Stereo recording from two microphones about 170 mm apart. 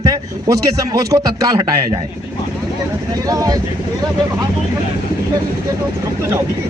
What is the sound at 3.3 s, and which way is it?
Speech, 20° right (ahead or behind).